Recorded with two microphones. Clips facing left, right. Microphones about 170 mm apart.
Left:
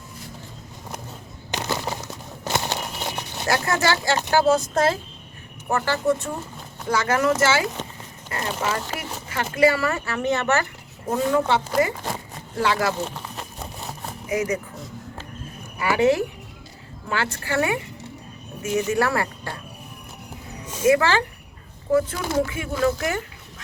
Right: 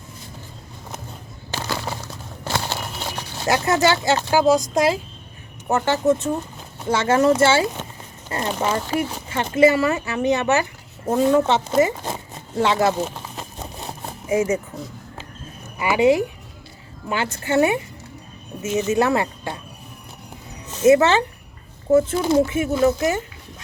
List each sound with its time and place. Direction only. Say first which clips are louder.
1.5 s crumpling: even; 20° left (ahead or behind)
3.0 s a sound: even; 20° left (ahead or behind)
3.4 s speech: right 4 dB; 20° right (ahead or behind)
13.6 s a sound: right 2 dB; 25° right (ahead or behind)
15.8 s speech: right 2 dB; 15° right (ahead or behind)
18.9 s speech: right 7 dB; 20° right (ahead or behind)
20.8 s speech: right 4 dB; 25° right (ahead or behind)